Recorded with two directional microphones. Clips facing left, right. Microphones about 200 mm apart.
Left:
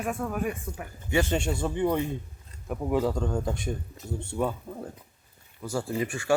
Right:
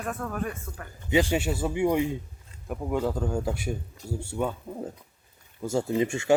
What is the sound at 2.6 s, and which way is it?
A man's voice, centre (ahead or behind).